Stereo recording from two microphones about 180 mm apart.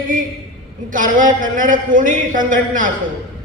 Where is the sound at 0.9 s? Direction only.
45° right (ahead or behind).